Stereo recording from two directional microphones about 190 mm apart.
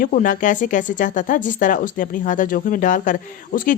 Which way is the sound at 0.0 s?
45° left (ahead or behind).